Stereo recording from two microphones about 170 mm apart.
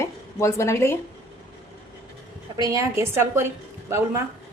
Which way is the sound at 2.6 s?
20° right (ahead or behind).